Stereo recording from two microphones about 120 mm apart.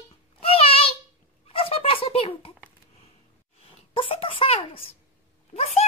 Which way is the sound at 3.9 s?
50° left (ahead or behind).